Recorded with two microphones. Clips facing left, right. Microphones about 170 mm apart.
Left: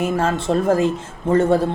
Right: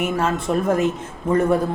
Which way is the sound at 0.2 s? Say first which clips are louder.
Left 2 dB; 30° left (ahead or behind).